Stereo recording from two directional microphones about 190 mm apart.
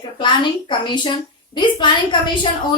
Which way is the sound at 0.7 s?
25° left (ahead or behind).